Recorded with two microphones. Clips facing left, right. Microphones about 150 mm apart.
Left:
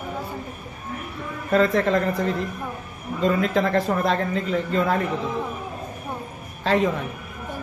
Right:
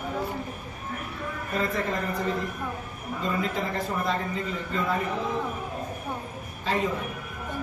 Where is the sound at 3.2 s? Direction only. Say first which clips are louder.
Left 8 dB; 75° left (ahead or behind).